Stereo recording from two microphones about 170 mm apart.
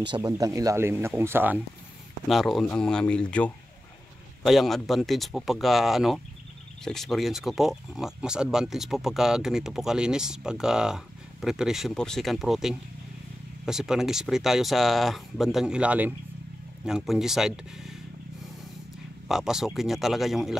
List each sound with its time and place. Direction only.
0.0 s speech: 30° right (ahead or behind); by 1.6 s 10° right (ahead or behind)
2.2 s speech: centre (ahead or behind)
19.2 s speech: centre (ahead or behind)